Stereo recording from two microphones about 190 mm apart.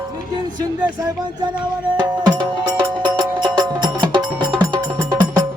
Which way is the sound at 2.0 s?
20° right (ahead or behind).